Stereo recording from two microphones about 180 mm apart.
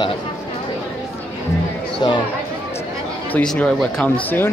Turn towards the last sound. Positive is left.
turn(degrees=10)  # may be behind; listen again after turning